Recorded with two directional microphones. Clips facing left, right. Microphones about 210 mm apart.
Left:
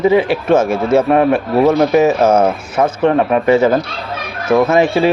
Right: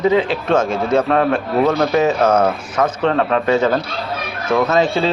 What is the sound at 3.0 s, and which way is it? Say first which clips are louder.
A man's voice: left 5 dB; 15° left (ahead or behind).